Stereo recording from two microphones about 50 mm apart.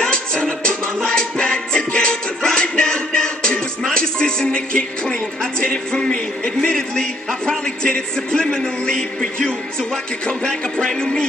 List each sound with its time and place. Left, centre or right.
0.0 s music: centre
3.9 s speech: centre